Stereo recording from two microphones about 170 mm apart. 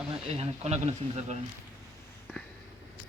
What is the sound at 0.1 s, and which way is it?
Speech, 35° right (ahead or behind).